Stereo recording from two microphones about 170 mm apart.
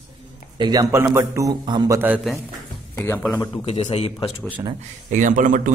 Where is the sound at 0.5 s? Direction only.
25° right (ahead or behind).